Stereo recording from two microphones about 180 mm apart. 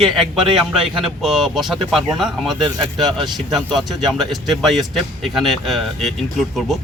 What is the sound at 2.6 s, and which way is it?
Speech, 25° right (ahead or behind).